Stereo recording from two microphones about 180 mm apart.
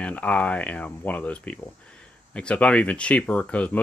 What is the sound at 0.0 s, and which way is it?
Speech, 10° left (ahead or behind).